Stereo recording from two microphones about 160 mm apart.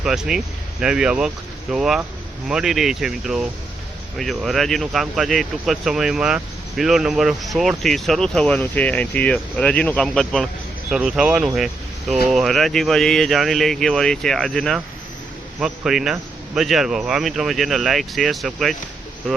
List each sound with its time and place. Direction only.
0.0 s speech: 5° right (ahead or behind)